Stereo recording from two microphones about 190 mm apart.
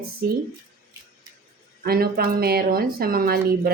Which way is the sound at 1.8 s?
50° right (ahead or behind).